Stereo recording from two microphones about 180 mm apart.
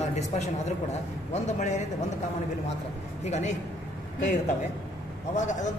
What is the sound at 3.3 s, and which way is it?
Speech, 40° left (ahead or behind).